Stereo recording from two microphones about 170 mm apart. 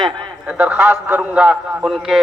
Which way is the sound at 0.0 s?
25° right (ahead or behind).